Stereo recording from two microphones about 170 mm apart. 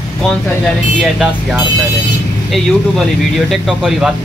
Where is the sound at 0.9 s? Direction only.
Centre (ahead or behind).